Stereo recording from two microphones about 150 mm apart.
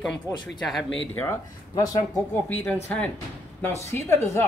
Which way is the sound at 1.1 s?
15° left (ahead or behind).